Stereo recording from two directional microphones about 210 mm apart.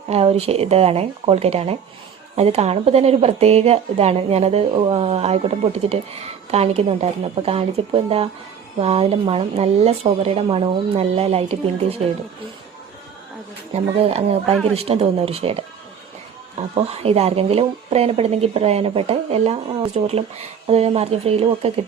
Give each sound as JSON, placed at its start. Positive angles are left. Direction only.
{"t": 0.1, "sound": "speech", "side_deg": -30}
{"t": 13.7, "sound": "speech", "side_deg": -30}
{"t": 16.7, "sound": "speech", "side_deg": -30}